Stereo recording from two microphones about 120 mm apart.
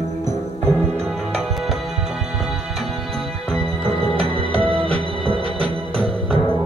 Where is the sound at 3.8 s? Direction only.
50° right (ahead or behind).